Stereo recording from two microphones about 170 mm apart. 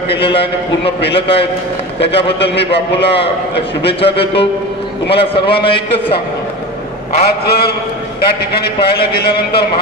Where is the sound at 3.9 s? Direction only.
35° left (ahead or behind).